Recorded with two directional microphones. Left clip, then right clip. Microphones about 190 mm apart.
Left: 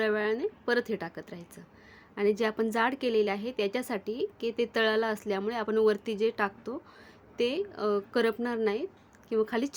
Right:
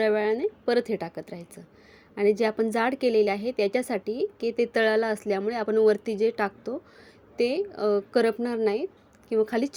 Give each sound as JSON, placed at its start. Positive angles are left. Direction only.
{"t": 0.0, "sound": "a woman's voice", "side_deg": -15}